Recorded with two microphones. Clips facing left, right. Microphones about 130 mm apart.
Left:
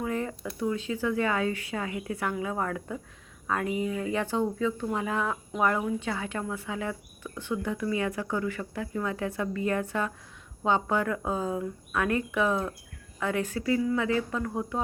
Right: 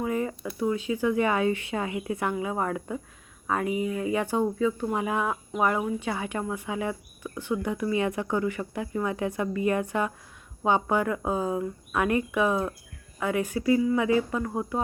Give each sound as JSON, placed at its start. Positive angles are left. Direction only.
{"t": 0.0, "sound": "speech", "side_deg": -10}